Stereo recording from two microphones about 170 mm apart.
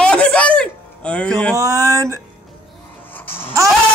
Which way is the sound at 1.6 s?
20° right (ahead or behind).